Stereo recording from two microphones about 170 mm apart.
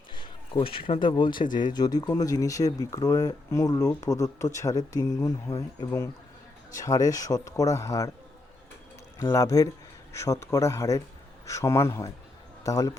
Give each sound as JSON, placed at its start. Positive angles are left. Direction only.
{"t": 0.1, "sound": "speech", "side_deg": 30}
{"t": 9.1, "sound": "speech", "side_deg": 20}